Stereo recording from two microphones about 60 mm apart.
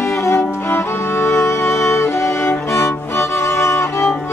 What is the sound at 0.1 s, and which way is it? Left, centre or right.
Music, left.